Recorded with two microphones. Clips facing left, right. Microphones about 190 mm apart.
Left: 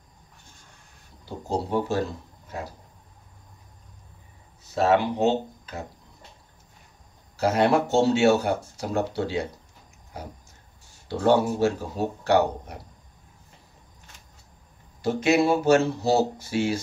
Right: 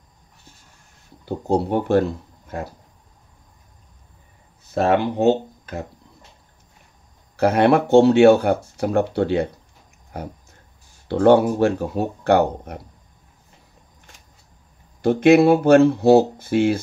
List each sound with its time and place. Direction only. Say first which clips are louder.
1.5 s speech: right 7 dB; 60° right (ahead or behind)
4.7 s speech: right 3 dB; 55° right (ahead or behind)
7.3 s speech: right 5 dB; 60° right (ahead or behind)
15.0 s speech: right 8 dB; 55° right (ahead or behind)